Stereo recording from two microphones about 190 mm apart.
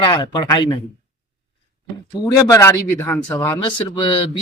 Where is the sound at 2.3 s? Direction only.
15° left (ahead or behind).